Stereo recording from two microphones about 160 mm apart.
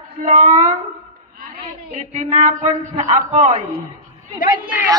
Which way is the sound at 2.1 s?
40° right (ahead or behind).